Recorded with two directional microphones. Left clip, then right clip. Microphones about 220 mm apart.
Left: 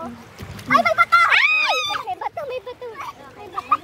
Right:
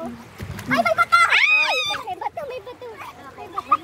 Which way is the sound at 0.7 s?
20° left (ahead or behind).